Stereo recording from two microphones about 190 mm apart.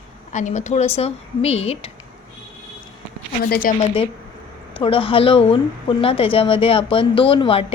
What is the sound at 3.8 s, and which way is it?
A woman's voice, 30° left (ahead or behind).